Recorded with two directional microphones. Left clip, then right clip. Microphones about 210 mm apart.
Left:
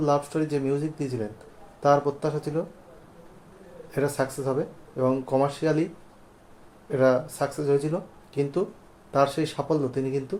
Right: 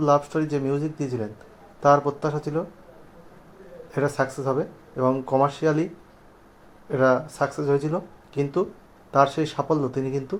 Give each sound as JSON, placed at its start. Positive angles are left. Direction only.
{"t": 0.0, "sound": "speech", "side_deg": -15}
{"t": 3.9, "sound": "speech", "side_deg": -15}
{"t": 6.9, "sound": "speech", "side_deg": -15}